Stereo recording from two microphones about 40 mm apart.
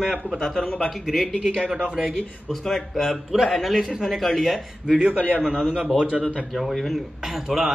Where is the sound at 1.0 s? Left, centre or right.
Centre.